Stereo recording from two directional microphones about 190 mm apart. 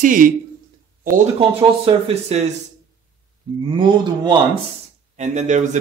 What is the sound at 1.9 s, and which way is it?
Speech, 35° right (ahead or behind).